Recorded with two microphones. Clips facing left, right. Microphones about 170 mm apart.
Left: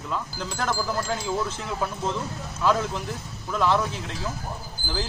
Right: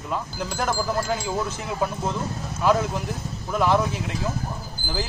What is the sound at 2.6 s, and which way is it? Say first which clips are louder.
Speech: right 2 dB; 15° right (ahead or behind).